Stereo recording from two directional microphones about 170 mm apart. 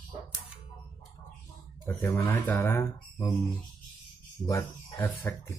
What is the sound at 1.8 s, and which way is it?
Speech, 15° left (ahead or behind).